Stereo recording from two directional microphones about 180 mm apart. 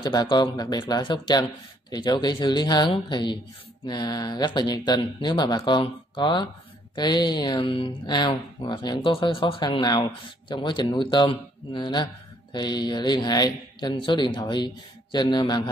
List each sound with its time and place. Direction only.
0.0 s speech: 25° left (ahead or behind)